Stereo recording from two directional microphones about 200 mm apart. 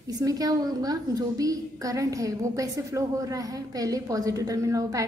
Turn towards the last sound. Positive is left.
turn(degrees=-15)  # may be behind; listen again after turning